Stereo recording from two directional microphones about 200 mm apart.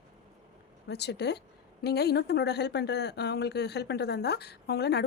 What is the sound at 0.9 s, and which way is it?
Speech, 55° left (ahead or behind).